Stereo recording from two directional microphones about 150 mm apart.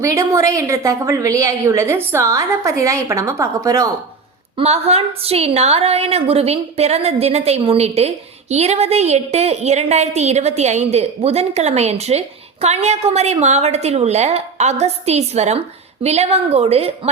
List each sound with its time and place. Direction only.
0.0 s a woman's voice: 20° right (ahead or behind)
4.5 s a woman's voice: 45° right (ahead or behind)